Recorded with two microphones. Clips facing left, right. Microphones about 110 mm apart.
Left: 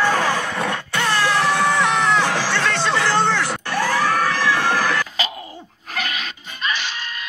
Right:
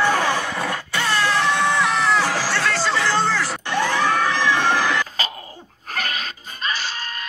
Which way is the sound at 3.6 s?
20° right (ahead or behind).